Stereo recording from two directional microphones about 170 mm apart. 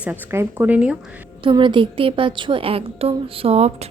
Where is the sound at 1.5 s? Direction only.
30° right (ahead or behind).